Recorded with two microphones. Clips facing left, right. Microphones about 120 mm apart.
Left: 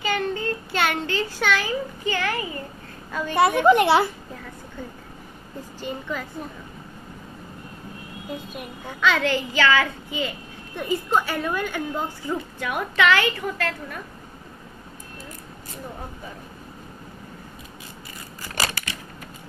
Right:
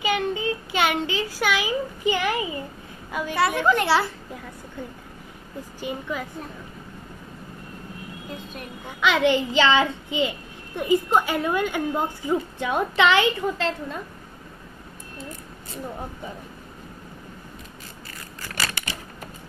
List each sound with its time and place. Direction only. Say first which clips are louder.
0.0 s a child's voice: right 1 dB; 15° right (ahead or behind)
3.3 s a woman's voice: left 5 dB; 20° left (ahead or behind)
5.6 s a woman's voice: right 1 dB; 15° right (ahead or behind)
8.8 s a woman's voice: right 2 dB; 15° right (ahead or behind)